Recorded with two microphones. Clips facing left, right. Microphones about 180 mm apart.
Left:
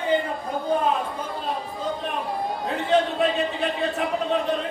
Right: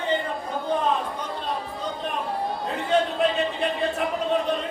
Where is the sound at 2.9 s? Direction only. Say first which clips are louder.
Left 1 dB; centre (ahead or behind).